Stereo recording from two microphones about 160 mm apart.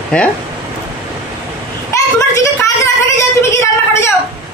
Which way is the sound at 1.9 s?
15° left (ahead or behind).